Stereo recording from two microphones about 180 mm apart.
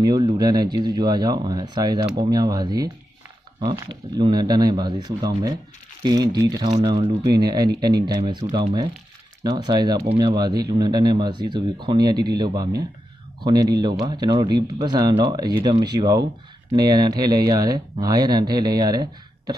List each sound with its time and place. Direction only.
0.0 s speech: 20° right (ahead or behind)
4.2 s speech: 25° right (ahead or behind)